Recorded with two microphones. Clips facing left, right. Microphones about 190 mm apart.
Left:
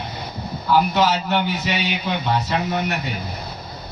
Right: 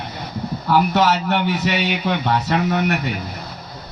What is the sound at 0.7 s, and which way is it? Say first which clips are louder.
A man's voice: right 1 dB; 65° right (ahead or behind).